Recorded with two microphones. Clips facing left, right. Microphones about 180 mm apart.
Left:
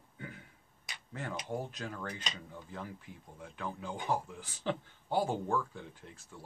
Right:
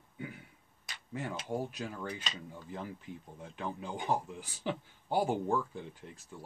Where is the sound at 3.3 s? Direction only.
20° right (ahead or behind).